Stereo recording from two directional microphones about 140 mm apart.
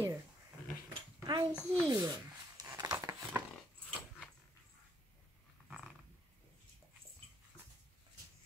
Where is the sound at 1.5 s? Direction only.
10° left (ahead or behind).